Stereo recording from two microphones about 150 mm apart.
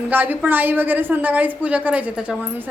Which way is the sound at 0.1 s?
10° right (ahead or behind).